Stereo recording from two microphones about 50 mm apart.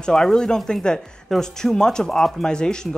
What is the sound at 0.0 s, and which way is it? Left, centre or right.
Speech, centre.